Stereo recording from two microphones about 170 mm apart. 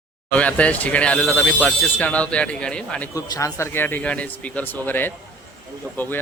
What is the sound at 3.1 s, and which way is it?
Speech, 20° left (ahead or behind).